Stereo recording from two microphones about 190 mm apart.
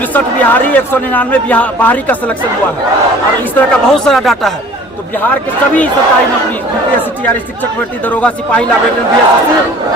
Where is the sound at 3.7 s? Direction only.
5° left (ahead or behind).